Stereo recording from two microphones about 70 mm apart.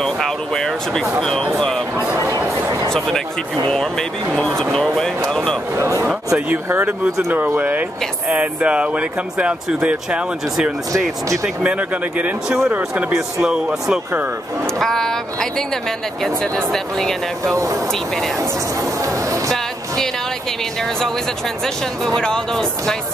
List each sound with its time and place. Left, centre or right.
0.0 s speech: centre
2.4 s a sound: right
3.6 s speech: centre
5.8 s speech: right
8.3 s speech: centre
14.8 s speech: centre
16.5 s speech: centre
22.0 s speech: centre